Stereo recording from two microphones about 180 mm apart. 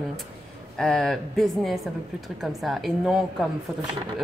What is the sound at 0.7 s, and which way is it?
A woman's voice, 5° left (ahead or behind).